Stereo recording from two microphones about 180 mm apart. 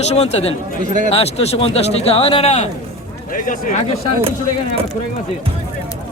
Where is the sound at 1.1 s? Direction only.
35° left (ahead or behind).